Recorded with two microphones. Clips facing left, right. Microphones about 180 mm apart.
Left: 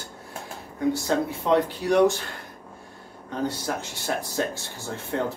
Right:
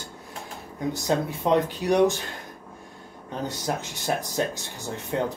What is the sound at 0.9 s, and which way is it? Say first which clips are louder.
Speech: right 1 dB; 20° right (ahead or behind).